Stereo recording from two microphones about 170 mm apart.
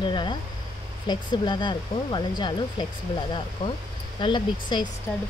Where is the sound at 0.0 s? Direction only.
25° left (ahead or behind).